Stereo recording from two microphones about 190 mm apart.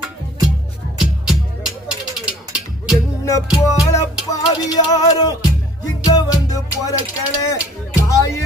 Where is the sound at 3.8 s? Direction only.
15° left (ahead or behind).